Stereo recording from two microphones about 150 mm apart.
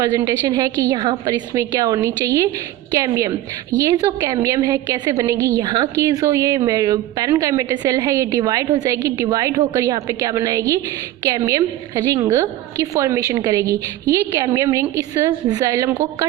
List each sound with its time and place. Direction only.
0.2 s a woman's voice: 25° right (ahead or behind)